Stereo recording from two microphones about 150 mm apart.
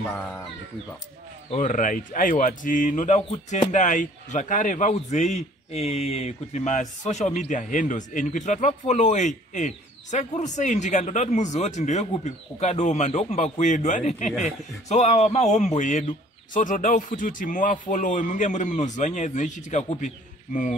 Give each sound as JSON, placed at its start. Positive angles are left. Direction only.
{"t": 1.5, "sound": "a man's voice", "side_deg": 55}